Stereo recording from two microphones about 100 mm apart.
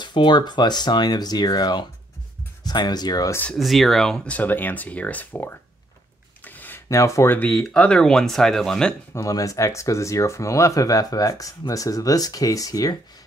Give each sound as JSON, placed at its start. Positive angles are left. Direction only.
{"t": 0.0, "sound": "speech", "side_deg": 50}
{"t": 3.5, "sound": "speech", "side_deg": 0}
{"t": 6.4, "sound": "a sound", "side_deg": 15}
{"t": 6.9, "sound": "speech", "side_deg": 30}
{"t": 7.5, "sound": "speech", "side_deg": 0}
{"t": 9.1, "sound": "speech", "side_deg": 35}